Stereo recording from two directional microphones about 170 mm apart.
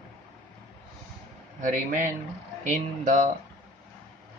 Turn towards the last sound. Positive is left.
turn(degrees=-45)  # may be behind; listen again after turning